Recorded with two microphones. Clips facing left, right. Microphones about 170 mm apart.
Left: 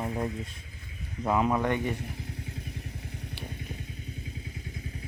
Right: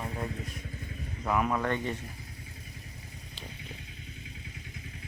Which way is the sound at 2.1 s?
75° left (ahead or behind).